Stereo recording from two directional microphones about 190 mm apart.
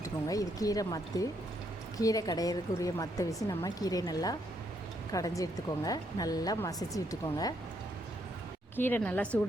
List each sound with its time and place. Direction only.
0.0 s a woman's voice: 20° left (ahead or behind)
8.7 s speech: 10° left (ahead or behind)